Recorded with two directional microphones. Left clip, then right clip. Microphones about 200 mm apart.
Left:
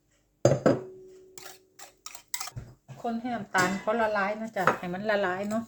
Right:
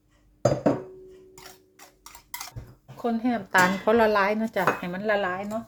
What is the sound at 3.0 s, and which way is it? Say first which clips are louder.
Speech: right 5 dB; 35° right (ahead or behind).